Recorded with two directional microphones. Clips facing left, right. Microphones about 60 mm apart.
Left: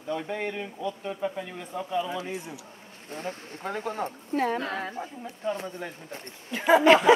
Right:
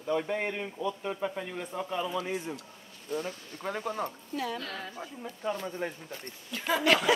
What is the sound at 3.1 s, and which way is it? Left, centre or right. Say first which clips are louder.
Speech: right 1 dB; left.